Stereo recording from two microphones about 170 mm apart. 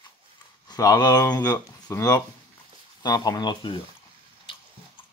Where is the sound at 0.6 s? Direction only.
20° left (ahead or behind).